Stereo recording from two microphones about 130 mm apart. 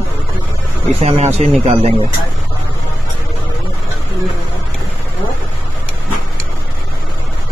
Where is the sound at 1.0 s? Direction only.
55° right (ahead or behind).